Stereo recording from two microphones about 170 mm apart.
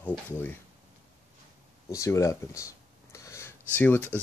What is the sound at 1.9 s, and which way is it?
Speech, 20° left (ahead or behind).